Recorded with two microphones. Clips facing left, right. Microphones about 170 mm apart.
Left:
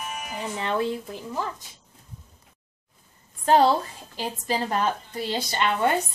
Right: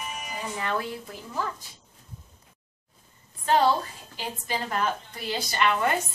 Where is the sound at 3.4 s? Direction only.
40° left (ahead or behind).